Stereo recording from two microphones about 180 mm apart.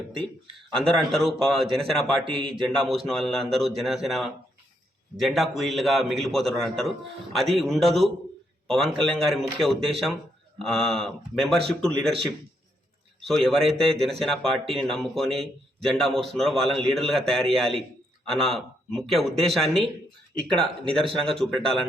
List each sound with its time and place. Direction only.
0.8 s a man's voice: 5° left (ahead or behind)
2.2 s a man's voice: 30° right (ahead or behind)
2.6 s a man's voice: centre (ahead or behind)
13.1 s a man's voice: centre (ahead or behind)
21.2 s a man's voice: centre (ahead or behind)